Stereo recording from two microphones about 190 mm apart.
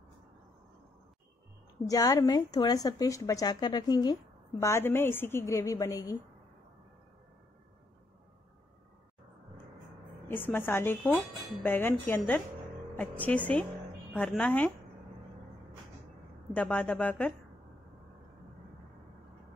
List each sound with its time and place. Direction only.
1.9 s speech: 15° left (ahead or behind)
10.2 s speech: 10° left (ahead or behind)
16.5 s speech: 5° left (ahead or behind)